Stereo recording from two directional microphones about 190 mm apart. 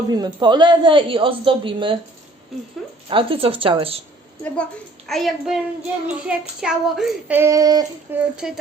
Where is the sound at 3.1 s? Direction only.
30° right (ahead or behind).